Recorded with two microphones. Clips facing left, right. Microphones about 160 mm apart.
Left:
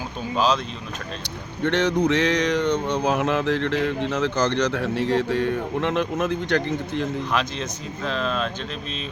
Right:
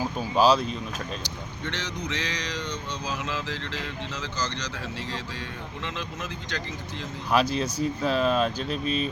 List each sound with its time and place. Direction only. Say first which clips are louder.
0.3 s speech: right 2 dB; 10° right (ahead or behind)
1.6 s a sound: left 14 dB; 55° left (ahead or behind)
7.3 s speech: right 3 dB; 10° right (ahead or behind)